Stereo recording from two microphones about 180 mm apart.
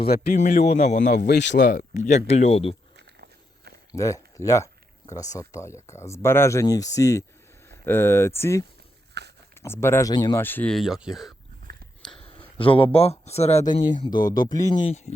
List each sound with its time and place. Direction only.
0.3 s speech: 40° left (ahead or behind)
1.3 s speech: 75° left (ahead or behind)
1.5 s speech: 50° left (ahead or behind); by 2.7 s 35° left (ahead or behind)
3.2 s walk: 65° right (ahead or behind)
3.9 s speech: 15° left (ahead or behind)
9.2 s a sound: 65° right (ahead or behind)
9.6 s speech: 15° left (ahead or behind)
10.4 s speech: 10° left (ahead or behind)
12.2 s speech: 30° left (ahead or behind)
14.0 s speech: 25° left (ahead or behind)
14.8 s speech: 40° left (ahead or behind)